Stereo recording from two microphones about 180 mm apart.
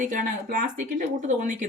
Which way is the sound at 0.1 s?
45° right (ahead or behind).